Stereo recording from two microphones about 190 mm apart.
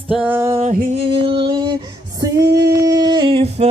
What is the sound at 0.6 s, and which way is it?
Female singing, 35° right (ahead or behind).